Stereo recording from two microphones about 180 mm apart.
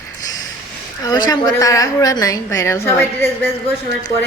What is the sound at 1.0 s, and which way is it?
A woman's voice, 20° left (ahead or behind).